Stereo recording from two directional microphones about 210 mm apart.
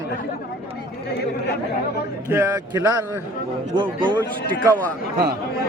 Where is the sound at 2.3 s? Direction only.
15° right (ahead or behind).